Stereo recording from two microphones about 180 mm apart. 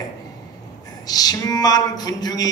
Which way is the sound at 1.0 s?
20° left (ahead or behind).